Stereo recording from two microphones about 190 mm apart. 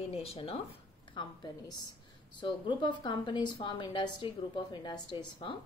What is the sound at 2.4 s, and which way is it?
A woman's voice, 25° left (ahead or behind).